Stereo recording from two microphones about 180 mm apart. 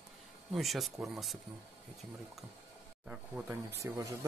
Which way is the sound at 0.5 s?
Centre (ahead or behind).